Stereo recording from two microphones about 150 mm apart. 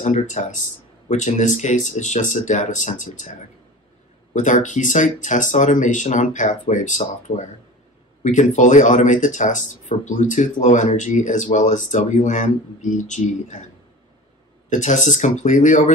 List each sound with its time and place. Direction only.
0.0 s speech: 50° left (ahead or behind)
14.7 s speech: 55° left (ahead or behind)